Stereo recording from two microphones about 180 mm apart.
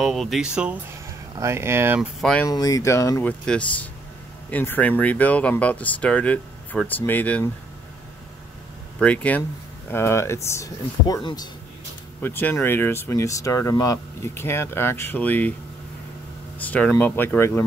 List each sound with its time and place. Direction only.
0.0 s speech: centre (ahead or behind)
2.0 s speech: 5° left (ahead or behind)
2.4 s speech: 20° left (ahead or behind)
9.0 s speech: 5° left (ahead or behind)
12.2 s speech: 10° left (ahead or behind)
16.6 s speech: 10° left (ahead or behind)